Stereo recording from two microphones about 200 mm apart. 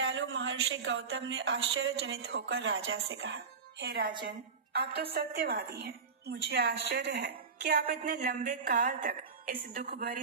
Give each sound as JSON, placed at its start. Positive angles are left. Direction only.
{"t": 0.0, "sound": "a woman's voice", "side_deg": -60}